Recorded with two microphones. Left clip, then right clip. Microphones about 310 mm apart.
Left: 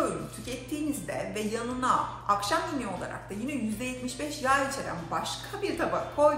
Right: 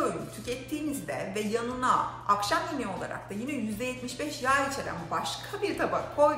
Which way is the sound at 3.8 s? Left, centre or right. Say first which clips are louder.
Right 1 dB; centre.